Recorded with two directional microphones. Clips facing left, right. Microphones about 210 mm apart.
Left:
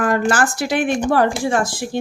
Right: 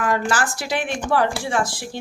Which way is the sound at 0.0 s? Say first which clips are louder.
Left 4 dB; 50° left (ahead or behind).